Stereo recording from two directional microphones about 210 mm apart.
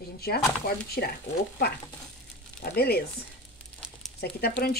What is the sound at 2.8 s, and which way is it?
Speech, 50° left (ahead or behind).